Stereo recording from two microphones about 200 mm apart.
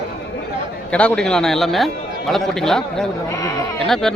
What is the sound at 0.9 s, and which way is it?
A man's voice, 5° left (ahead or behind).